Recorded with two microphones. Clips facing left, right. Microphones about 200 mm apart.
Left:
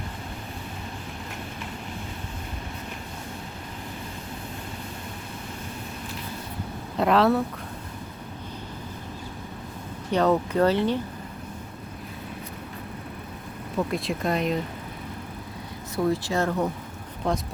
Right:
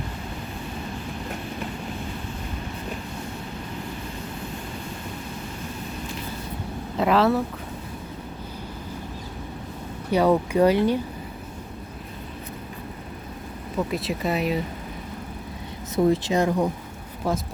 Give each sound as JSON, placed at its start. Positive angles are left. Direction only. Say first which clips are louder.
{"t": 6.9, "sound": "speech", "louder": "even", "side_deg": 0}
{"t": 10.1, "sound": "speech", "louder": "right 2 dB", "side_deg": -10}
{"t": 13.9, "sound": "speech", "louder": "right 1 dB", "side_deg": 0}
{"t": 16.0, "sound": "speech", "louder": "right 3 dB", "side_deg": -20}